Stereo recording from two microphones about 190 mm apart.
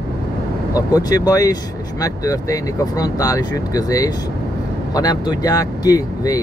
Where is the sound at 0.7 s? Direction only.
20° left (ahead or behind).